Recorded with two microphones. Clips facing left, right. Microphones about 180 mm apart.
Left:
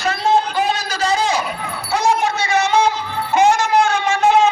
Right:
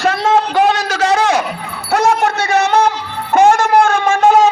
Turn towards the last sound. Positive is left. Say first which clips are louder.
# right 4 dB
turn(degrees=-45)  # may be behind; listen again after turning